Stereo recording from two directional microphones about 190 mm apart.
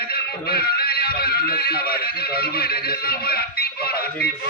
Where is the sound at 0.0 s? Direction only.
55° left (ahead or behind).